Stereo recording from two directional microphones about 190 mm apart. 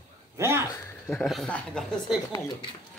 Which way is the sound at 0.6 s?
15° left (ahead or behind).